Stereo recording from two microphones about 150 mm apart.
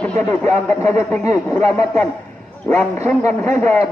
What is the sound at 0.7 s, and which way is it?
A man's voice, 20° left (ahead or behind).